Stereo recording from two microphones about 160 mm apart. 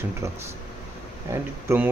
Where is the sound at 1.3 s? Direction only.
15° right (ahead or behind).